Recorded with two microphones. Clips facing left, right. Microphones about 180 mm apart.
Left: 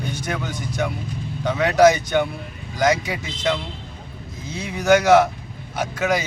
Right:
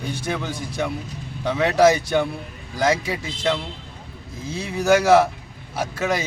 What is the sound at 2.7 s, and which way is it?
Speech, 30° right (ahead or behind).